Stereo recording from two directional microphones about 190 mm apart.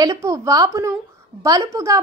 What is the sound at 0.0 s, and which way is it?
A woman's voice, 20° right (ahead or behind).